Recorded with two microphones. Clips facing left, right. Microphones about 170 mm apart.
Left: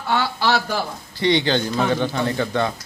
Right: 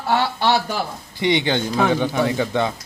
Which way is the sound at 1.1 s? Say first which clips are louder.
Left 1 dB; 15° right (ahead or behind).